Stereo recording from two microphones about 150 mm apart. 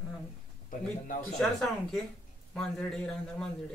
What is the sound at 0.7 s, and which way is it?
Speech, 60° left (ahead or behind).